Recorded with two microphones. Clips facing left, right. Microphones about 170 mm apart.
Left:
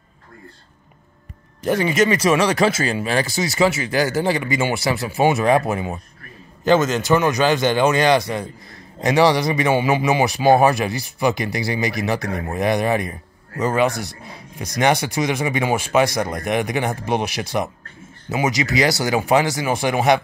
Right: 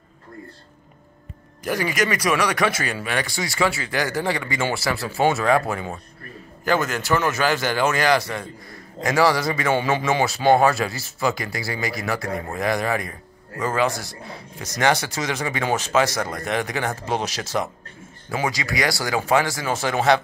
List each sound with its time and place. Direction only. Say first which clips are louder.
1.6 s speech: left 5 dB; 25° left (ahead or behind)